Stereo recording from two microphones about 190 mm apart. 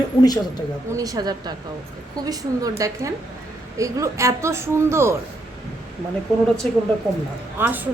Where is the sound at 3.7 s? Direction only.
15° right (ahead or behind).